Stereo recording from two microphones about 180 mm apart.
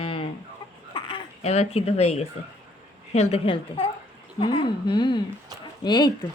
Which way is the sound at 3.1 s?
30° left (ahead or behind).